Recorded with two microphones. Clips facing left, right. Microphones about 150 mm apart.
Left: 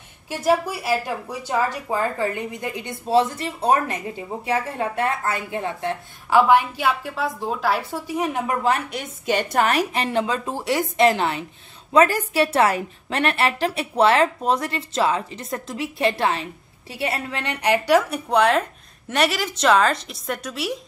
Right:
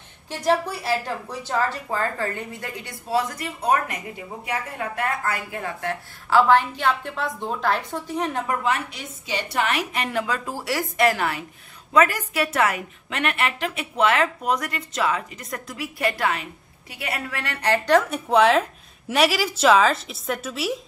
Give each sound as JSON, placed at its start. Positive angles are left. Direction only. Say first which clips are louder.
{"t": 0.3, "sound": "a woman's voice", "louder": "left 2 dB", "side_deg": 10}
{"t": 8.9, "sound": "a woman's voice", "louder": "left 7 dB", "side_deg": 50}